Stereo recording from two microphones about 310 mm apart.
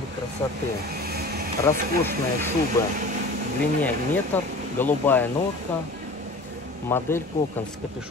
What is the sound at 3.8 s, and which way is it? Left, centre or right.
Speech, centre.